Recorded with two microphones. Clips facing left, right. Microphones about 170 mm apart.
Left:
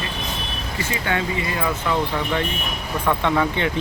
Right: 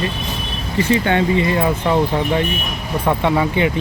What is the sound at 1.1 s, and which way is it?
Speech, 30° right (ahead or behind).